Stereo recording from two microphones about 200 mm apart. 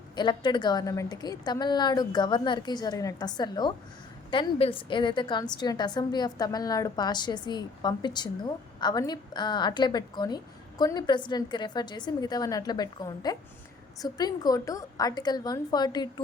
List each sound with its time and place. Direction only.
0.2 s a woman's voice: 20° left (ahead or behind)